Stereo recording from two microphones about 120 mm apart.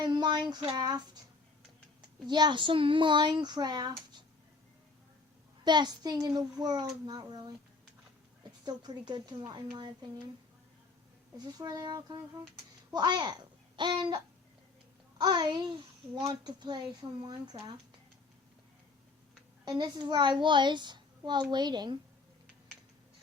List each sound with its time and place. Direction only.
0.0 s a sound: 35° right (ahead or behind)
0.6 s a child's voice: 40° right (ahead or behind)
2.2 s a child's voice: 40° right (ahead or behind)
5.6 s a child's voice: 35° right (ahead or behind)
8.6 s a child's voice: 35° right (ahead or behind)
11.3 s a child's voice: 35° right (ahead or behind)
15.2 s a child's voice: 35° right (ahead or behind)
19.6 s a child's voice: 35° right (ahead or behind)